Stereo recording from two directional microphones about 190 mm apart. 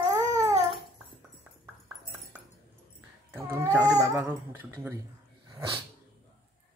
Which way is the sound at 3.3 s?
10° right (ahead or behind).